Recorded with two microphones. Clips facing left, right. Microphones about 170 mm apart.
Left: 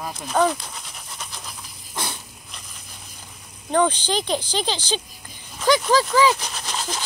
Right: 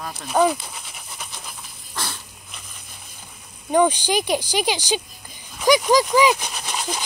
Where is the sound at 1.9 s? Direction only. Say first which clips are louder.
Left 1 dB; 20° left (ahead or behind).